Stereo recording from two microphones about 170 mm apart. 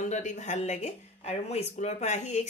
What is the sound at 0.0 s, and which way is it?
Speech, 45° left (ahead or behind).